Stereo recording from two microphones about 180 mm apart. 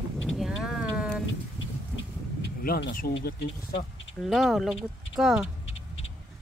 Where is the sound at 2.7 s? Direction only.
55° left (ahead or behind).